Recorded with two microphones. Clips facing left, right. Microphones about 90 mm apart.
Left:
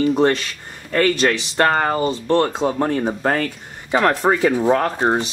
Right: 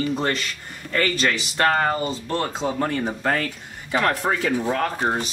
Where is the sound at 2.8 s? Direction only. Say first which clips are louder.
Left 2 dB; 20° left (ahead or behind).